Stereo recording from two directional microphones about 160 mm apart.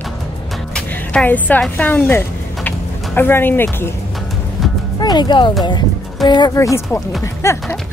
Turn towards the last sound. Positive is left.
turn(degrees=15)  # may be behind; listen again after turning